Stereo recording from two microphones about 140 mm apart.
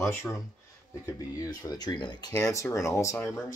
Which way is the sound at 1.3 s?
25° left (ahead or behind).